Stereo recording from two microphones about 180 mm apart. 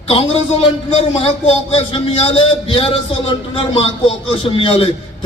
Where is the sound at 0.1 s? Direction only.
30° left (ahead or behind).